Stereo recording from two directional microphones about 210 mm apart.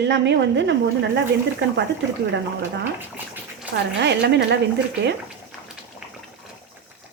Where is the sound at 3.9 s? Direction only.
55° right (ahead or behind).